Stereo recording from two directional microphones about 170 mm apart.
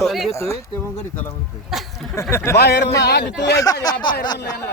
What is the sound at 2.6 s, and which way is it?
Speech, 75° left (ahead or behind).